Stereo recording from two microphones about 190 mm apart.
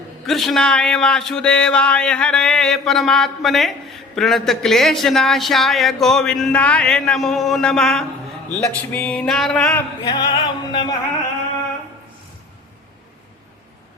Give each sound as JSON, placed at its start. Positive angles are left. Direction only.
{"t": 0.3, "sound": "speech", "side_deg": 0}
{"t": 10.0, "sound": "music", "side_deg": 20}